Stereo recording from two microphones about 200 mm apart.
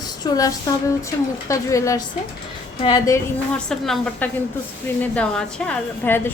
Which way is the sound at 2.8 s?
20° left (ahead or behind).